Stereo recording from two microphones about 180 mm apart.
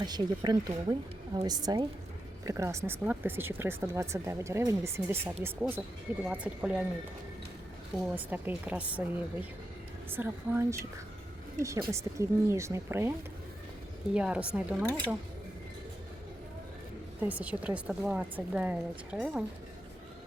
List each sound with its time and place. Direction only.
0.0 s speech: 25° right (ahead or behind); by 6.8 s 5° right (ahead or behind)
8.1 s speech: 10° right (ahead or behind)
11.9 s speech: 15° right (ahead or behind)
17.2 s speech: 10° right (ahead or behind)